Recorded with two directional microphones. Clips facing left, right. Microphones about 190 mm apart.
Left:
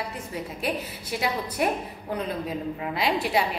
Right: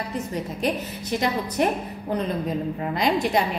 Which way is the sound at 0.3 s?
5° left (ahead or behind).